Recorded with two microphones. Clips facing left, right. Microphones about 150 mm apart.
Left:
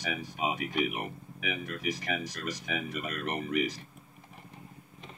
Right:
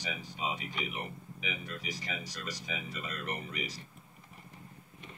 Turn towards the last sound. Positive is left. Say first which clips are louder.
# left 8 dB
turn(degrees=70)  # may be behind; listen again after turning